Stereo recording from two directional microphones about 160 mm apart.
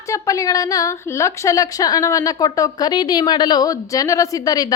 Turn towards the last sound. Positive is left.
turn(degrees=25)  # may be behind; listen again after turning